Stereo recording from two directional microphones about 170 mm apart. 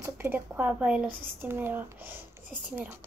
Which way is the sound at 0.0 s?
10° right (ahead or behind).